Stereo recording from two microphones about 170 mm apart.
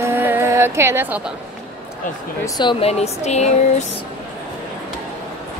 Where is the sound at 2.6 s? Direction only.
30° left (ahead or behind).